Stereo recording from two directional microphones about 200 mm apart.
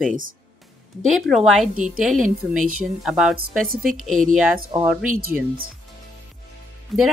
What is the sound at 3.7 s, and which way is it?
Speech, 45° right (ahead or behind).